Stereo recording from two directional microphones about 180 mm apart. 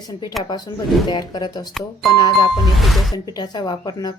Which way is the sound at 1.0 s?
25° left (ahead or behind).